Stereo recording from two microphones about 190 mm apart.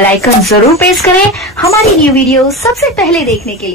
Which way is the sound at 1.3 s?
Centre (ahead or behind).